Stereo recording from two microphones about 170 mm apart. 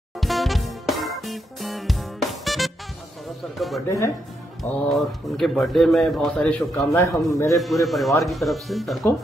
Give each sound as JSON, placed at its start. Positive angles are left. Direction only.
{"t": 0.2, "sound": "music", "side_deg": 0}
{"t": 3.5, "sound": "a man's voice", "side_deg": 0}
{"t": 4.8, "sound": "a man's voice", "side_deg": 0}
{"t": 6.9, "sound": "a man's voice", "side_deg": 15}
{"t": 7.5, "sound": "a man's voice", "side_deg": 0}